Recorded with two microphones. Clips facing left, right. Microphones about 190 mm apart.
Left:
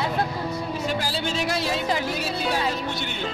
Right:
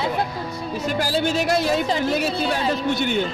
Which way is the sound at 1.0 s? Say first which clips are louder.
Right 5 dB; 45° right (ahead or behind).